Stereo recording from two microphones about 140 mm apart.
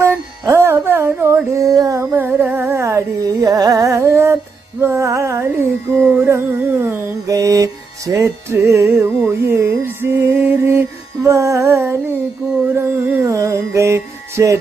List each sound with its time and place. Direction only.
0.0 s music: 20° right (ahead or behind)